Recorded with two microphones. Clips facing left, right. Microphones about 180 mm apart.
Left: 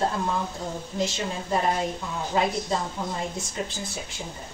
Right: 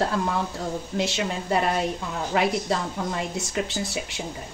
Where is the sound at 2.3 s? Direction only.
85° right.